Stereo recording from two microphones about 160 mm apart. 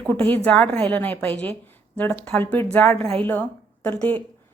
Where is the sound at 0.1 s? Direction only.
10° left (ahead or behind).